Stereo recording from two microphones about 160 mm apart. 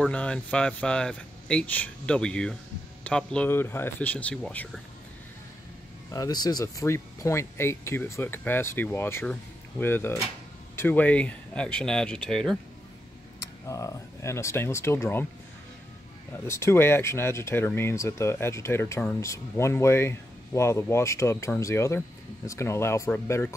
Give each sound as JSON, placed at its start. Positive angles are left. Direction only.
{"t": 0.0, "sound": "speech", "side_deg": 5}
{"t": 6.1, "sound": "speech", "side_deg": 25}
{"t": 13.7, "sound": "speech", "side_deg": 20}
{"t": 16.4, "sound": "speech", "side_deg": 15}